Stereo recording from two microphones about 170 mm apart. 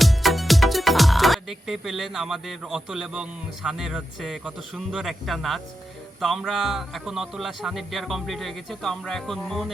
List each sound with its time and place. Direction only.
0.0 s speech: centre (ahead or behind)